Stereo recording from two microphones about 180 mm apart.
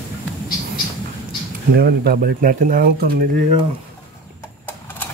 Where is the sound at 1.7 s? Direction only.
60° right (ahead or behind).